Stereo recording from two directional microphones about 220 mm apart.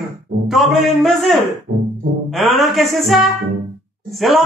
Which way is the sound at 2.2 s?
Centre (ahead or behind).